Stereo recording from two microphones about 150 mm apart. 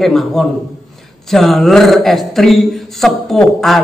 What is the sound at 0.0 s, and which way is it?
Speech, centre (ahead or behind).